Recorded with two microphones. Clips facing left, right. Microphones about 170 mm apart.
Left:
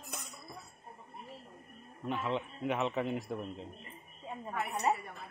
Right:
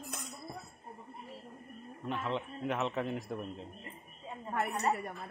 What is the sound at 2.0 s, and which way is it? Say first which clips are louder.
A man's voice: left 1 dB; 5° left (ahead or behind).